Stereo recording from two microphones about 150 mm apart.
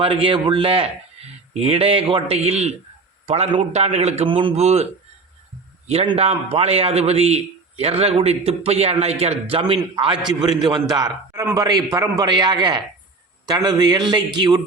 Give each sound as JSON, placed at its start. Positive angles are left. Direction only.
{"t": 0.0, "sound": "a man's voice", "side_deg": -40}
{"t": 4.3, "sound": "a man's voice", "side_deg": -35}
{"t": 5.9, "sound": "a man's voice", "side_deg": -40}